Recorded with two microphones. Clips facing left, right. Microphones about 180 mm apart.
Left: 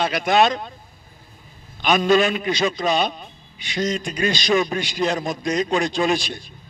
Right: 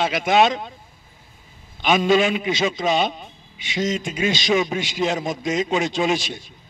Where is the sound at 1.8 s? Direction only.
20° right (ahead or behind).